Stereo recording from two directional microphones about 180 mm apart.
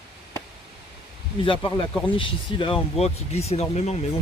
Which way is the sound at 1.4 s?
30° left (ahead or behind).